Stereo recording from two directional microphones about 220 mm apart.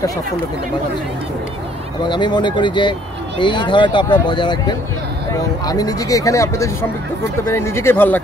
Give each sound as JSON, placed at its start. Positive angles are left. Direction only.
{"t": 2.0, "sound": "speech", "side_deg": 20}